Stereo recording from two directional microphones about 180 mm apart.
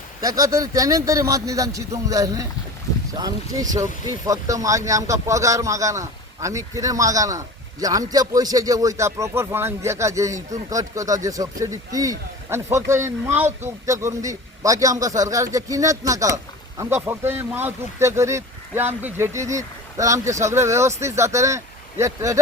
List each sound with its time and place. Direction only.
0.2 s a man's voice: 20° right (ahead or behind)